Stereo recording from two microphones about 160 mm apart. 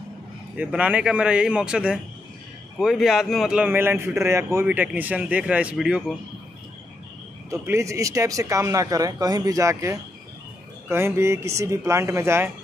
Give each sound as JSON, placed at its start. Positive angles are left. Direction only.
{"t": 0.6, "sound": "a man's voice", "side_deg": -10}
{"t": 7.4, "sound": "a man's voice", "side_deg": -20}